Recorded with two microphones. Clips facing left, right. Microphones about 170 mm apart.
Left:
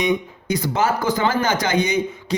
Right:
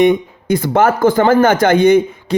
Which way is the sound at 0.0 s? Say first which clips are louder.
Right 9 dB; 55° right (ahead or behind).